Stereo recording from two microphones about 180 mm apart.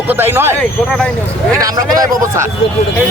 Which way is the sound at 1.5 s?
20° right (ahead or behind).